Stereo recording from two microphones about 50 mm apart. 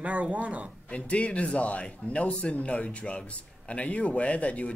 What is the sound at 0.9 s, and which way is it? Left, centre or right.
Speech, left.